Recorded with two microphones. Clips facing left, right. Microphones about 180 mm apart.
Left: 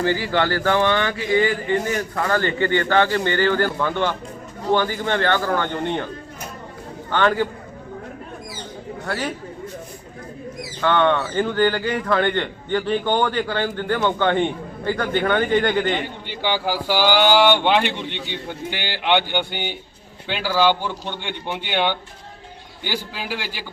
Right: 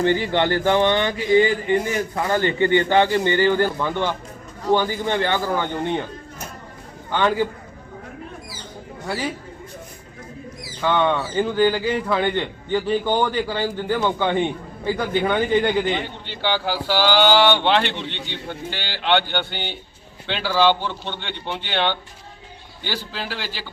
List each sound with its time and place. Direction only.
0.0 s speech: 25° right (ahead or behind)
7.1 s speech: 10° right (ahead or behind)
9.0 s speech: 10° right (ahead or behind)
10.8 s speech: 10° right (ahead or behind)
16.4 s speech: 10° left (ahead or behind)